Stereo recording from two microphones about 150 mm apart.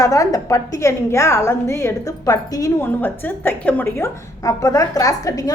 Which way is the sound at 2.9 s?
15° left (ahead or behind).